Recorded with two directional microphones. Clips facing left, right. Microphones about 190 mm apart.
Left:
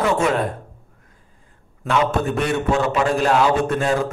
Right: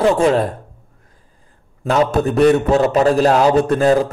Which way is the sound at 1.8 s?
40° right (ahead or behind).